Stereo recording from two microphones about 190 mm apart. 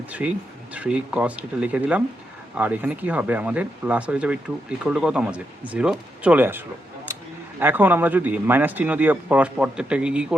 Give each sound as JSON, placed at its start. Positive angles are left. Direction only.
{"t": 0.1, "sound": "speech", "side_deg": -5}
{"t": 7.6, "sound": "speech", "side_deg": -10}